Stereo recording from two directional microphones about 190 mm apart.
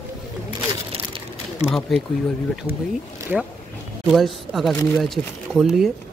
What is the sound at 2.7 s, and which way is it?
Speech, 30° right (ahead or behind).